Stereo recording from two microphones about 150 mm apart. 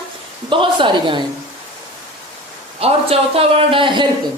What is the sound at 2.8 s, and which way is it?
A woman's voice, 40° right (ahead or behind).